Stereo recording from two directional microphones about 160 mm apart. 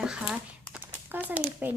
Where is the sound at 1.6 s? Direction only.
10° right (ahead or behind).